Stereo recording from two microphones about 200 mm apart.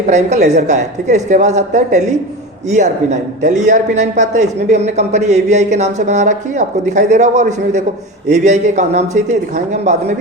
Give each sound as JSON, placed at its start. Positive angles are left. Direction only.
{"t": 0.1, "sound": "speech", "side_deg": -35}